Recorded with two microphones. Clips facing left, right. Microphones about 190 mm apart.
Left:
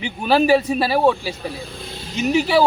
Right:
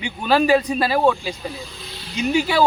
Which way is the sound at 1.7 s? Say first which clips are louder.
Left 4 dB; 50° left (ahead or behind).